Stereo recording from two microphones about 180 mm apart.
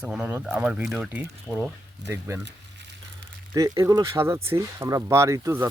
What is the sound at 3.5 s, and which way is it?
Speech, 20° right (ahead or behind).